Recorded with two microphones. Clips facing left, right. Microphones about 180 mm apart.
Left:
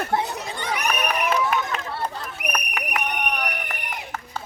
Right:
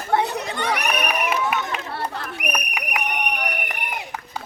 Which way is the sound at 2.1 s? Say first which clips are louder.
Right 3 dB; 65° right (ahead or behind).